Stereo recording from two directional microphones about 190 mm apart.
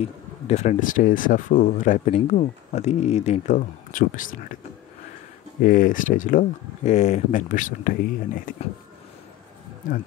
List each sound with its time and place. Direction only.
0.0 s speech: 35° left (ahead or behind)
5.6 s speech: 45° left (ahead or behind)